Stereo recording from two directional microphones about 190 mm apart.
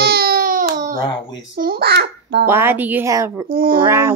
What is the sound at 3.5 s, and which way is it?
Speech, 50° right (ahead or behind).